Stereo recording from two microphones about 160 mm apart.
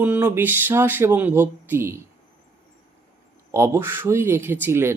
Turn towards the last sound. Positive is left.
turn(degrees=-15)  # may be behind; listen again after turning